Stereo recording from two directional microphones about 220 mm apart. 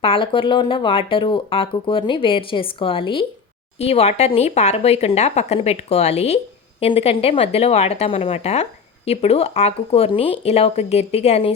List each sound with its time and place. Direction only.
0.0 s speech: 25° left (ahead or behind)